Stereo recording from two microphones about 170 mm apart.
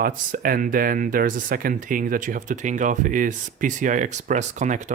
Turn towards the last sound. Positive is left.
turn(degrees=-45)  # may be behind; listen again after turning